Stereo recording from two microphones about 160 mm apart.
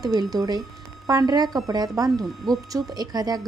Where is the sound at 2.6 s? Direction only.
25° right (ahead or behind).